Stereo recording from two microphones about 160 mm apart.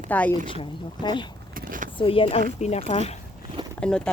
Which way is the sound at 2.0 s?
35° left (ahead or behind).